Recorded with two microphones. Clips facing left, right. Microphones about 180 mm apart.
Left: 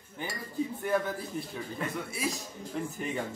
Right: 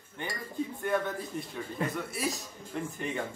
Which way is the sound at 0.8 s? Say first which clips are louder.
Even; 5° left (ahead or behind).